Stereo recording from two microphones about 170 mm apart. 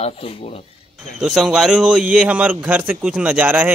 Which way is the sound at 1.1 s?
5° right (ahead or behind).